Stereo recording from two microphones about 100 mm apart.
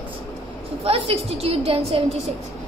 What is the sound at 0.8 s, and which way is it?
Speech, 75° right (ahead or behind).